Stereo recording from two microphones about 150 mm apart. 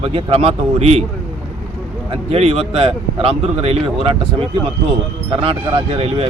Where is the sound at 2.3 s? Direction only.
40° right (ahead or behind).